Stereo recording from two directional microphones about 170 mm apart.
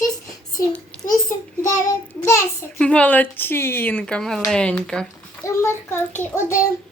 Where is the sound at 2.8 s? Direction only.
5° left (ahead or behind).